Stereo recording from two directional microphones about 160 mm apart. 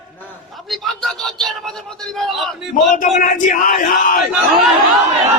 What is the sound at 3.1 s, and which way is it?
Crowd, 55° left (ahead or behind).